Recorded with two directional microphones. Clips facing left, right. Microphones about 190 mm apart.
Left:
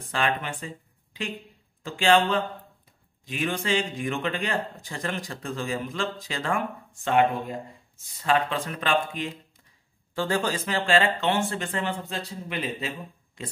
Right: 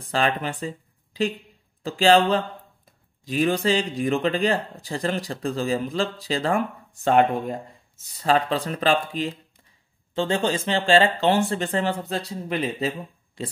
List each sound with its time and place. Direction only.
0.1 s speech: 35° right (ahead or behind)
1.8 s speech: 35° right (ahead or behind)
8.2 s speech: 35° right (ahead or behind)